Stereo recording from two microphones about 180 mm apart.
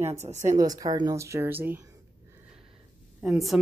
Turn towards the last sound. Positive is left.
turn(degrees=0)  # may be behind; listen again after turning